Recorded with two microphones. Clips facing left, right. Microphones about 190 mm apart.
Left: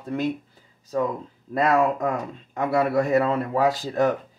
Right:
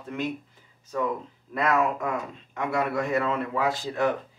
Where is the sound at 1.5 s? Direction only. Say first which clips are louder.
Left 4 dB; 35° left (ahead or behind).